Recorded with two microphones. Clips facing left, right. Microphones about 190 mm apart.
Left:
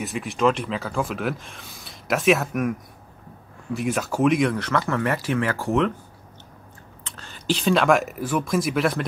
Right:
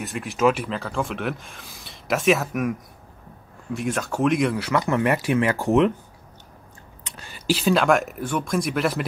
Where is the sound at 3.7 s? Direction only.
5° left (ahead or behind); by 5.9 s 20° right (ahead or behind).